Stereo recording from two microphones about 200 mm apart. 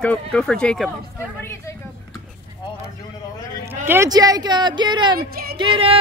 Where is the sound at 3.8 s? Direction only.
15° right (ahead or behind).